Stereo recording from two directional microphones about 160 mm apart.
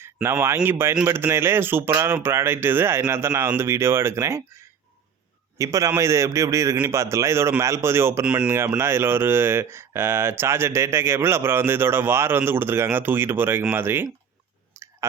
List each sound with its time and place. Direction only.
0.0 s speech: 15° right (ahead or behind)
5.5 s a man's voice: 20° right (ahead or behind)
14.8 s clicking: 15° right (ahead or behind)